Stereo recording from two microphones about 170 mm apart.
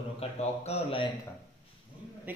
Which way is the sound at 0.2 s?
40° left (ahead or behind).